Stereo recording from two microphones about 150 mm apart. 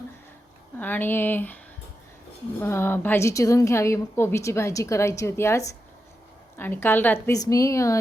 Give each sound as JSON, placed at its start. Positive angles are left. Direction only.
{"t": 0.8, "sound": "speech", "side_deg": 10}
{"t": 2.6, "sound": "a woman's voice", "side_deg": 15}
{"t": 7.3, "sound": "a woman's voice", "side_deg": 25}